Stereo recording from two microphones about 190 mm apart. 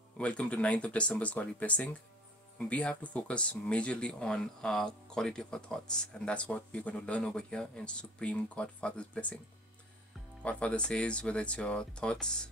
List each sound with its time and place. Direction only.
0.2 s speech: 5° left (ahead or behind)
10.4 s speech: 5° left (ahead or behind)